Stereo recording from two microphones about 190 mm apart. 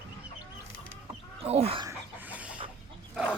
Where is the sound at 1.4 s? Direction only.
30° right (ahead or behind).